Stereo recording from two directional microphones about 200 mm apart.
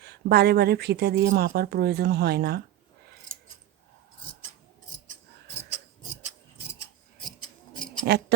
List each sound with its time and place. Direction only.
0.0 s speech: 55° right (ahead or behind)
8.1 s speech: 50° right (ahead or behind)